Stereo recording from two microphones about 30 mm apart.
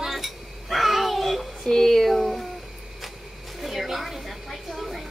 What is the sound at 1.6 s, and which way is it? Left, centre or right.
Music, centre.